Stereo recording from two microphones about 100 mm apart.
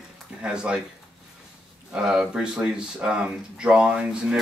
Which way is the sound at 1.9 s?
10° right (ahead or behind).